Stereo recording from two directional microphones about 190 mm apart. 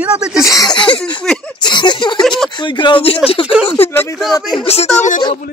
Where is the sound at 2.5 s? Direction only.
25° left (ahead or behind).